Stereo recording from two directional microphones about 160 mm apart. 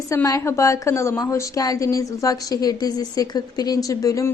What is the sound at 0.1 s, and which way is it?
A woman's voice, 20° left (ahead or behind).